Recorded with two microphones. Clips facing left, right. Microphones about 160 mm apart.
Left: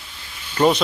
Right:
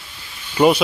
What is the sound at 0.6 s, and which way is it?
Speech, 15° right (ahead or behind).